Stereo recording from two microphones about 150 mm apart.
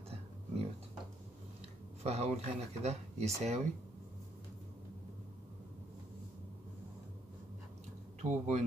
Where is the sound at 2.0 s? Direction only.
45° right (ahead or behind).